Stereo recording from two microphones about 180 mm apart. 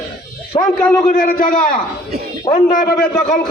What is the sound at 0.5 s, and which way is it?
Speech, 25° left (ahead or behind).